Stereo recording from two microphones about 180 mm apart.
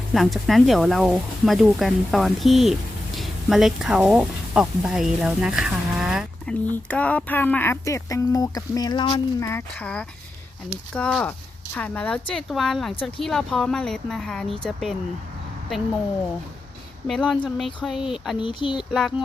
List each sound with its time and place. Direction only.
0.1 s speech: centre (ahead or behind)
17.1 s speech: 5° left (ahead or behind)
18.3 s speech: 25° left (ahead or behind)